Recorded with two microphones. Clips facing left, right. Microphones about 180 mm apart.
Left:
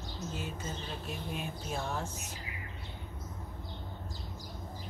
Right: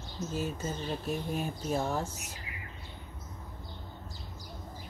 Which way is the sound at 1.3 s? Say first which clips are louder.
Right 5 dB; 40° right (ahead or behind).